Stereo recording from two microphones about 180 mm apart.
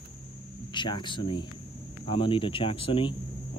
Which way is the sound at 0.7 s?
25° left (ahead or behind).